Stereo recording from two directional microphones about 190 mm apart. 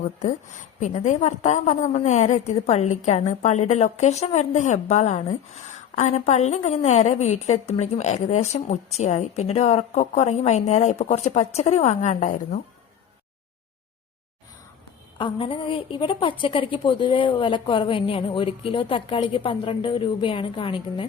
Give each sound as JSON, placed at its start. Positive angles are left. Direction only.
{"t": 0.2, "sound": "a woman's voice", "side_deg": 40}
{"t": 15.2, "sound": "a woman's voice", "side_deg": 25}